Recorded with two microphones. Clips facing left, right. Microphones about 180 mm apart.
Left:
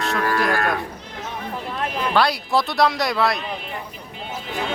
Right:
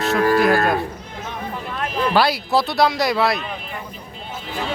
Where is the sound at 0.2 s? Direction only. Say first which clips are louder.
Right 6 dB; 30° right (ahead or behind).